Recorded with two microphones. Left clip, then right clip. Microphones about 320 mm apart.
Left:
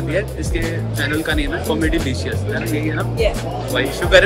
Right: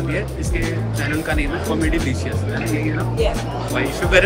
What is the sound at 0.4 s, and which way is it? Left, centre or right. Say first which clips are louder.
Speech: left 1 dB; centre.